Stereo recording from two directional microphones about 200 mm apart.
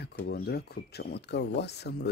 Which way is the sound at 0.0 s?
50° left (ahead or behind).